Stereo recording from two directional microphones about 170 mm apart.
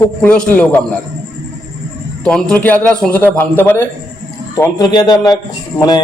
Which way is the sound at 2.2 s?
5° left (ahead or behind).